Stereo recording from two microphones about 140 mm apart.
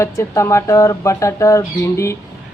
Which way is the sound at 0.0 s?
20° left (ahead or behind).